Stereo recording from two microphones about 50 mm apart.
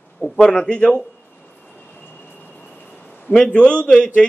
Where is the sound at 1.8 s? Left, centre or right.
Left.